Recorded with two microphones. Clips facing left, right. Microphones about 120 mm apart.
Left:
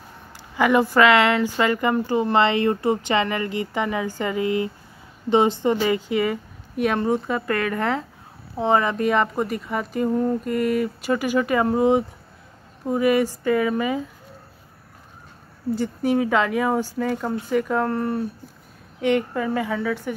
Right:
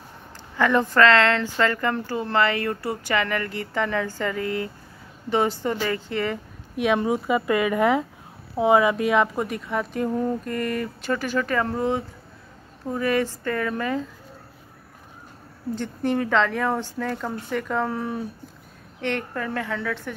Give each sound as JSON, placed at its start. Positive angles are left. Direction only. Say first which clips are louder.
{"t": 0.6, "sound": "a woman's voice", "louder": "left 2 dB", "side_deg": 10}
{"t": 15.7, "sound": "a woman's voice", "louder": "left 3 dB", "side_deg": 5}
{"t": 18.9, "sound": "a woman's voice", "louder": "left 6 dB", "side_deg": 10}